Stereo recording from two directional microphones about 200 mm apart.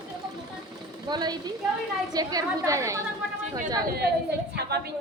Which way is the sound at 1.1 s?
20° right (ahead or behind).